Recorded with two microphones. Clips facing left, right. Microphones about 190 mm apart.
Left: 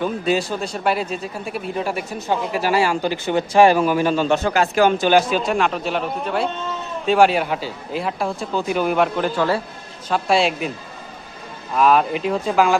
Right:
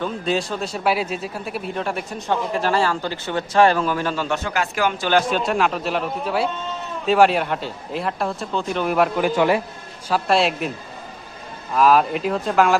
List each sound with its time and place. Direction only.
0.0 s a man's voice: 5° left (ahead or behind); by 4.4 s 20° left (ahead or behind)
4.4 s speech: 30° left (ahead or behind)
5.5 s a man's voice: centre (ahead or behind)
9.3 s a man's voice: 15° right (ahead or behind)
10.1 s a man's voice: centre (ahead or behind)
11.7 s a man's voice: centre (ahead or behind)